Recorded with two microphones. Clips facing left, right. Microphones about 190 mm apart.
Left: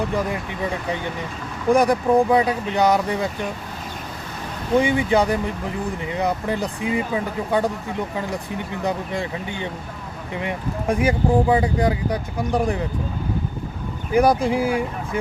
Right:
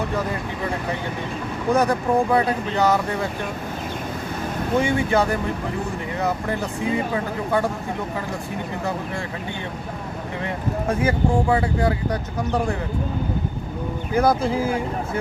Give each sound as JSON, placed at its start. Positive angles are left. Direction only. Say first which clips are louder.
{"t": 1.7, "sound": "speech", "louder": "left 3 dB", "side_deg": 15}
{"t": 4.8, "sound": "speech", "louder": "left 2 dB", "side_deg": 15}
{"t": 10.4, "sound": "speech", "louder": "even", "side_deg": 15}
{"t": 14.1, "sound": "speech", "louder": "left 2 dB", "side_deg": 15}